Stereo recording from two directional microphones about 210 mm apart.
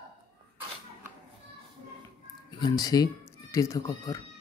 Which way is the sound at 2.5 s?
20° left (ahead or behind).